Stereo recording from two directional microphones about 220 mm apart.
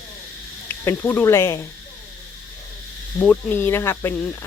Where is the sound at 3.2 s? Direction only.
10° left (ahead or behind).